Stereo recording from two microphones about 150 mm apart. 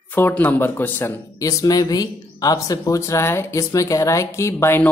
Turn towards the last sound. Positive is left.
turn(degrees=15)  # may be behind; listen again after turning